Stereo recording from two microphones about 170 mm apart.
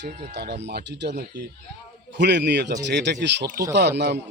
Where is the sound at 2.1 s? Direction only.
90° right.